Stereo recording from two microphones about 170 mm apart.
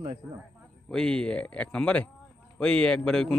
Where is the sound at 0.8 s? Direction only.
5° left (ahead or behind).